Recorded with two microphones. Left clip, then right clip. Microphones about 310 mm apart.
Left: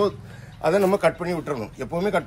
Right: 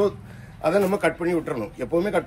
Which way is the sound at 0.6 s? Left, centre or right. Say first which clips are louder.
Left 1 dB; left.